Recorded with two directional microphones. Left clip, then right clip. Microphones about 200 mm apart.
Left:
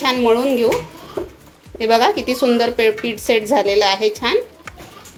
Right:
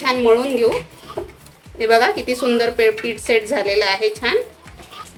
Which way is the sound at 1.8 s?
20° left (ahead or behind).